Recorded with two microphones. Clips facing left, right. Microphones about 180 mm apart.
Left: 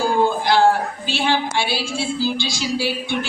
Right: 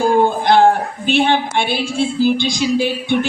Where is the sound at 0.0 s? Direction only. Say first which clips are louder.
Right 4 dB; 20° right (ahead or behind).